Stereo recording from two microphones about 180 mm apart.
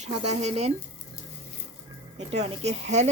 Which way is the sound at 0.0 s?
35° right (ahead or behind).